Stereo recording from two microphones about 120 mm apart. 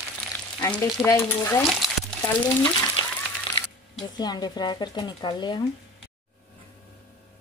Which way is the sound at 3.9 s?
35° left (ahead or behind).